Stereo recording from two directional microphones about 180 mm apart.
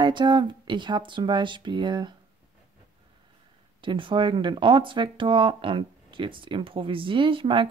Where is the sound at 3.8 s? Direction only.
30° right (ahead or behind).